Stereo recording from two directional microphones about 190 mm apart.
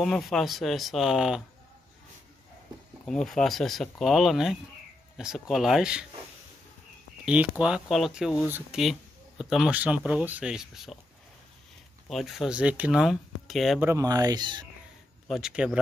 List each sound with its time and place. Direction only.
0.0 s speech: centre (ahead or behind)
3.3 s speech: centre (ahead or behind)
7.2 s speech: 5° right (ahead or behind)
12.1 s speech: centre (ahead or behind)
13.7 s speech: 15° right (ahead or behind)
15.2 s speech: centre (ahead or behind)